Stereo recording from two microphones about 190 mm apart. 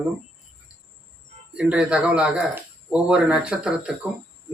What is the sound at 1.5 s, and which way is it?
Speech, 5° right (ahead or behind).